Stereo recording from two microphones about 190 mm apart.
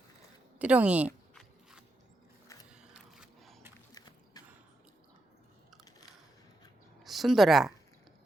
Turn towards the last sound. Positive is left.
turn(degrees=0)  # may be behind; listen again after turning